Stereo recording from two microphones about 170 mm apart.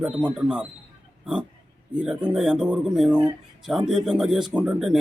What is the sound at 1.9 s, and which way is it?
Speech, 5° right (ahead or behind).